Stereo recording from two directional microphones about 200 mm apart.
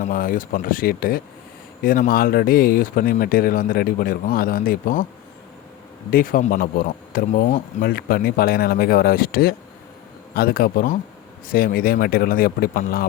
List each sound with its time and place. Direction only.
0.0 s speech: 45° left (ahead or behind)
6.1 s speech: 45° left (ahead or behind)